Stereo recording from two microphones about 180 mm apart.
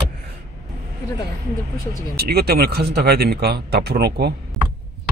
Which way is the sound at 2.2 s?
60° right (ahead or behind).